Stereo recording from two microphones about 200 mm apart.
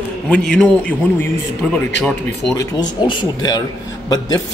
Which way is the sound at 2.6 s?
20° left (ahead or behind).